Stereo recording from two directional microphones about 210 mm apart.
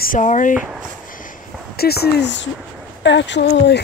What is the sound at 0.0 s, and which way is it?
Speech, 40° left (ahead or behind).